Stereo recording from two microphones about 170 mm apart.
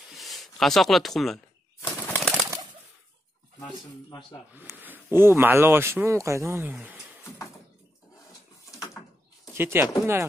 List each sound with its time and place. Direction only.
0.1 s a sound: centre (ahead or behind)
2.0 s bird: 10° left (ahead or behind)
3.6 s speech: 25° left (ahead or behind)
4.6 s speech: 10° right (ahead or behind)
9.5 s speech: 15° right (ahead or behind)